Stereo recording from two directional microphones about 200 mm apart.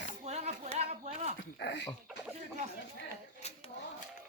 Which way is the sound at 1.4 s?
60° left (ahead or behind).